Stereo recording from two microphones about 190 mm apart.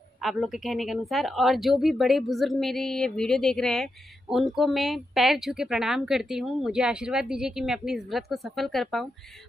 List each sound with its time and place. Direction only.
0.2 s speech: centre (ahead or behind)